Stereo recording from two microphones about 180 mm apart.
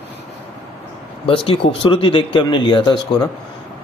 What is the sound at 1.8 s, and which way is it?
Speech, 30° left (ahead or behind).